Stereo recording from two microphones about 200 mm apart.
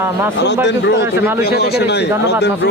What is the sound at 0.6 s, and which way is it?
A man's voice, 60° left (ahead or behind).